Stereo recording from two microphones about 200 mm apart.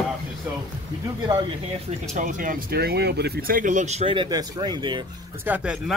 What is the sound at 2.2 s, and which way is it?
Speech, 40° right (ahead or behind).